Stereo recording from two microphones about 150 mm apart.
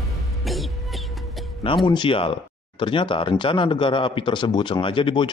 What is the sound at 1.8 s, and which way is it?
Speech, 35° left (ahead or behind).